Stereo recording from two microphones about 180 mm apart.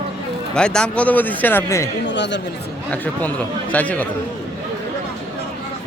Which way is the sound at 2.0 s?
80° left.